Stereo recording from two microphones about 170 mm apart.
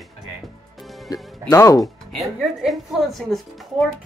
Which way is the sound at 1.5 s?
20° left (ahead or behind).